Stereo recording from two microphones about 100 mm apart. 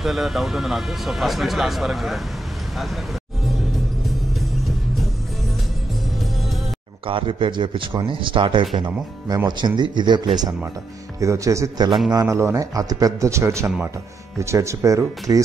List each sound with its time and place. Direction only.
0.0 s speech: centre (ahead or behind)
7.1 s speech: 60° right (ahead or behind)
11.1 s a man's voice: 35° right (ahead or behind)